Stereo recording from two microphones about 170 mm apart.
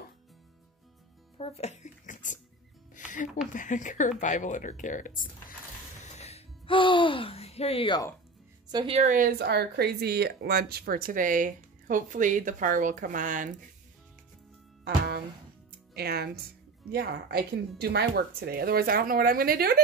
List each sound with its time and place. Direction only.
1.4 s speech: 40° left (ahead or behind)
3.5 s speech: 45° left (ahead or behind)
6.1 s music: 40° left (ahead or behind)
8.7 s speech: 30° right (ahead or behind)
9.0 s speech: 50° right (ahead or behind)
11.1 s speech: 50° right (ahead or behind)
15.9 s speech: 70° right (ahead or behind)